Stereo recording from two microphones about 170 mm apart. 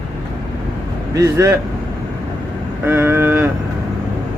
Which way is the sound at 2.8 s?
10° right (ahead or behind).